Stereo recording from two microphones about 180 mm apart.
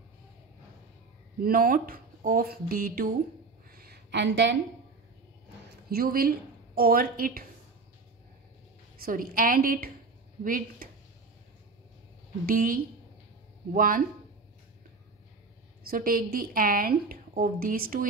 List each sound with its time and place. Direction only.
1.4 s a woman's voice: 55° right (ahead or behind)
3.7 s a sound: 60° right (ahead or behind); by 4.6 s 80° right
5.9 s a woman's voice: 55° right (ahead or behind)
9.0 s a woman's voice: 50° right (ahead or behind)
12.4 s a woman's voice: 50° right (ahead or behind)
15.9 s a woman's voice: 55° right (ahead or behind)